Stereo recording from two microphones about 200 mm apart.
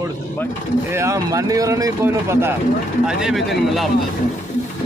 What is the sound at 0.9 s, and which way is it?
Speech, 15° right (ahead or behind).